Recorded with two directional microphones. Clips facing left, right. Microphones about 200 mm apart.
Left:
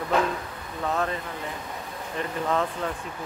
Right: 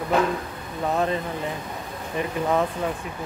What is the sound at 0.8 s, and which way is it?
Speech, 20° right (ahead or behind).